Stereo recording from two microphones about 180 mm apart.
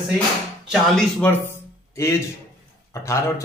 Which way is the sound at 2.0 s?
15° left (ahead or behind).